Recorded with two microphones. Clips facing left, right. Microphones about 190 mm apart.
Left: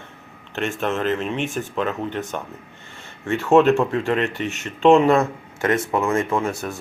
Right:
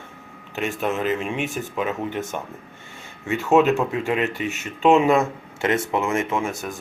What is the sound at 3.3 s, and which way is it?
Speech, centre (ahead or behind).